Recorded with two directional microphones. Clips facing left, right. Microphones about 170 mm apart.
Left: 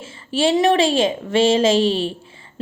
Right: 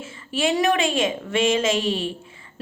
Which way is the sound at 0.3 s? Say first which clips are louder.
Left 5 dB; 30° left (ahead or behind).